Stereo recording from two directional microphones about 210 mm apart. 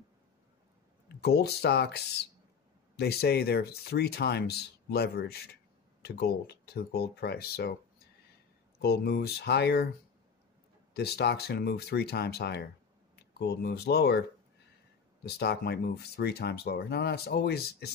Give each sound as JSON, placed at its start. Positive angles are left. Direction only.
{"t": 1.0, "sound": "speech", "side_deg": 50}
{"t": 3.0, "sound": "speech", "side_deg": 50}
{"t": 8.7, "sound": "speech", "side_deg": 50}
{"t": 10.9, "sound": "speech", "side_deg": 50}
{"t": 15.2, "sound": "speech", "side_deg": 50}